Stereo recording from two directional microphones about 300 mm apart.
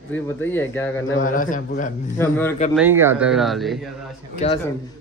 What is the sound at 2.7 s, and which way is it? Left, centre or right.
Speech, centre.